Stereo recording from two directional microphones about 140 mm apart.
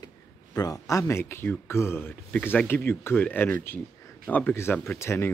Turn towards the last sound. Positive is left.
turn(degrees=20)  # may be behind; listen again after turning